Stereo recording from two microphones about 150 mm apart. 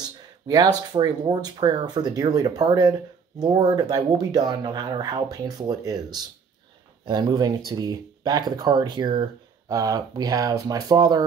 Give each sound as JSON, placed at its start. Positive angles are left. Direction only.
{"t": 0.9, "sound": "speech", "side_deg": -30}